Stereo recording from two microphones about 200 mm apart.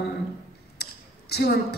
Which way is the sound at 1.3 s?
55° left (ahead or behind).